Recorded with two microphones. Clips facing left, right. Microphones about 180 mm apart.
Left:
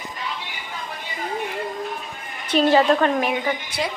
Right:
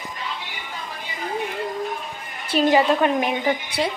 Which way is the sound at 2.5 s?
10° right (ahead or behind).